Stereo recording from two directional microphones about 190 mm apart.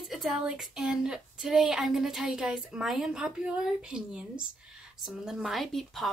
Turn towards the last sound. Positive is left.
turn(degrees=0)  # may be behind; listen again after turning